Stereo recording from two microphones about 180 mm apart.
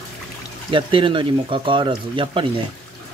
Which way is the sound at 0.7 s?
30° right (ahead or behind).